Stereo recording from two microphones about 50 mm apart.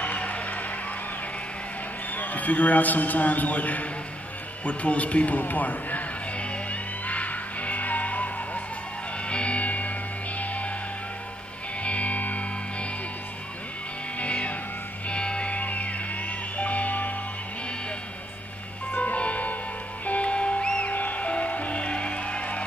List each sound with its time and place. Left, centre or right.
0.0 s music: left
2.1 s a man's voice: left
4.6 s music: left
9.3 s music: left
11.8 s music: left
14.1 s music: left
18.9 s music: left